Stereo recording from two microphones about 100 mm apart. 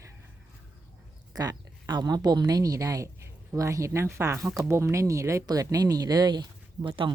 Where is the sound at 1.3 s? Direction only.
40° right (ahead or behind).